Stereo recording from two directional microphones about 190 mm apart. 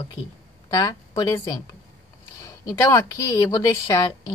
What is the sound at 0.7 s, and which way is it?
Speech, 20° left (ahead or behind).